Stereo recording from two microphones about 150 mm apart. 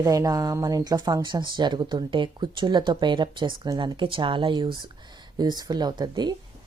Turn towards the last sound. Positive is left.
turn(degrees=-30)  # may be behind; listen again after turning